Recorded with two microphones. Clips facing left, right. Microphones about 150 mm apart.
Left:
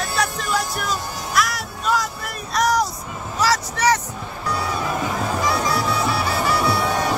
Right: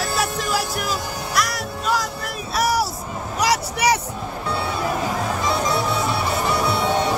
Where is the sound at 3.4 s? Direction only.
15° right (ahead or behind).